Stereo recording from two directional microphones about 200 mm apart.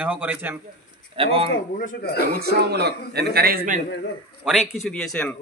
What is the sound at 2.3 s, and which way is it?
A man's voice, 50° right (ahead or behind).